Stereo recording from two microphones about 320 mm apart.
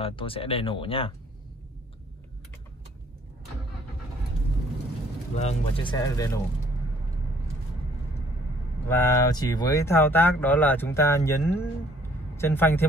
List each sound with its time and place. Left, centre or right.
0.0 s speech: centre
5.3 s speech: left
8.8 s speech: centre